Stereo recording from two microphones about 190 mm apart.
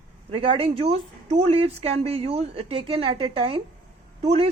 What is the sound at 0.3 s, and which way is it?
Speech, 30° right (ahead or behind).